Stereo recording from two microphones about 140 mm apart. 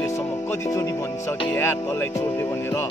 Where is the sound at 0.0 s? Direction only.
20° left (ahead or behind).